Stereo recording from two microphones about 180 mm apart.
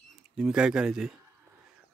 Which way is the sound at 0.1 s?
5° right (ahead or behind).